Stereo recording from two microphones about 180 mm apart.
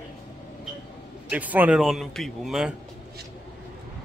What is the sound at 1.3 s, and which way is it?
Speech, 10° right (ahead or behind).